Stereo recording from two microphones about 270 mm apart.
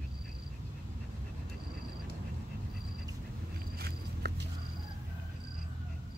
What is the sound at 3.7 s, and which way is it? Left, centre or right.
Walk, right.